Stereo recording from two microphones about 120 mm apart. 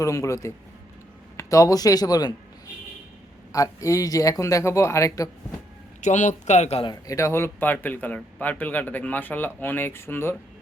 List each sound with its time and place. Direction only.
0.0 s speech: 25° left (ahead or behind)
3.5 s speech: 25° left (ahead or behind)
6.0 s speech: 85° left; by 6.8 s 65° left (ahead or behind)
6.8 s speech: 30° left (ahead or behind)